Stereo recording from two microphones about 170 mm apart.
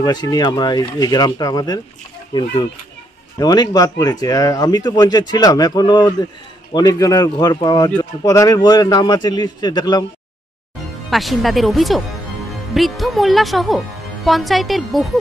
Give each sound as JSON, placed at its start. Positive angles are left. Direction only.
{"t": 0.0, "sound": "speech", "side_deg": 25}
{"t": 11.1, "sound": "speech", "side_deg": 0}